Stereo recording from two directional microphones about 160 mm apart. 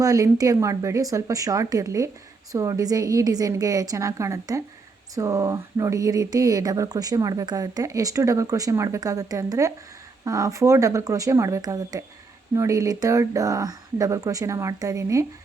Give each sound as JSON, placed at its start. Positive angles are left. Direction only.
{"t": 0.0, "sound": "speech", "side_deg": -20}